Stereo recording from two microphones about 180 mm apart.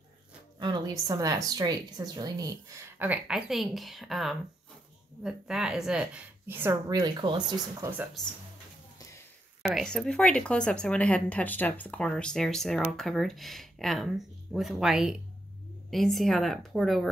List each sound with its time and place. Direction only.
0.6 s a woman's voice: 25° right (ahead or behind)
9.8 s speech: 5° left (ahead or behind)